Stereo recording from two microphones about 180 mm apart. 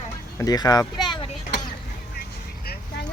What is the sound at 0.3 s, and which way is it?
Speech, 20° left (ahead or behind).